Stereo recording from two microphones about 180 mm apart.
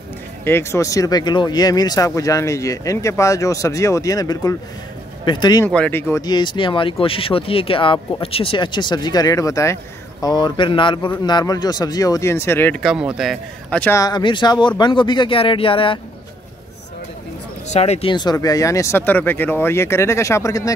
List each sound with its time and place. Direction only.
0.5 s speech: 15° left (ahead or behind)
5.7 s speech: 10° left (ahead or behind)
12.8 s speech: 5° right (ahead or behind); by 16.0 s 30° left (ahead or behind)
17.7 s speech: 35° left (ahead or behind); by 20.7 s 20° left (ahead or behind)